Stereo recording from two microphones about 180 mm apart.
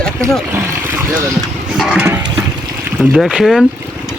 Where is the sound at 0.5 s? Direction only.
15° right (ahead or behind).